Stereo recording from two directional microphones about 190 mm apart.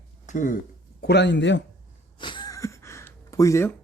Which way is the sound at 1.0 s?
60° left (ahead or behind).